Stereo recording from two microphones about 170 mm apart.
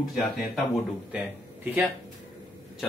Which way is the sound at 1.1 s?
10° right (ahead or behind).